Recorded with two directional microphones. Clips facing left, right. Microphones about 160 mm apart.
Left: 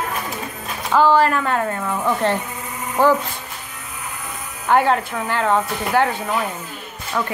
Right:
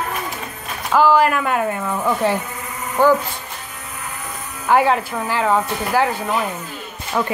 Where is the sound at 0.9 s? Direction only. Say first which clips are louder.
Right 1 dB; 10° right (ahead or behind).